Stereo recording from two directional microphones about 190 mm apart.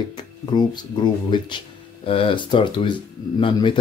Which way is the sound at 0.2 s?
20° left (ahead or behind).